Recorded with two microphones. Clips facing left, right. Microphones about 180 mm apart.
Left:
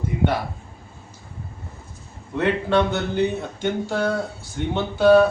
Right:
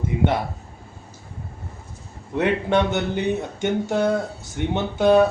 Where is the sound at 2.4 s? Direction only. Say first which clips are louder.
Even; 15° right (ahead or behind).